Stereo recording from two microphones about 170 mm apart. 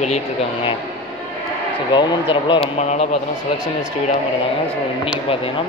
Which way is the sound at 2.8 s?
40° left (ahead or behind).